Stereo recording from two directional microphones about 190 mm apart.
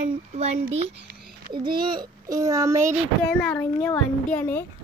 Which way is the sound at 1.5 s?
25° right (ahead or behind).